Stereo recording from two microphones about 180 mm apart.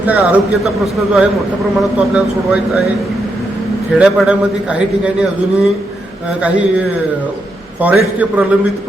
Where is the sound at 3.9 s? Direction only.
5° right (ahead or behind).